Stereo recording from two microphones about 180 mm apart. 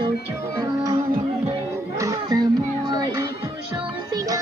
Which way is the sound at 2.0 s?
20° right (ahead or behind).